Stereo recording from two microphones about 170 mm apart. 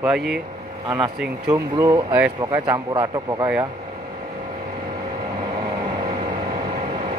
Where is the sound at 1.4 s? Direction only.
20° right (ahead or behind).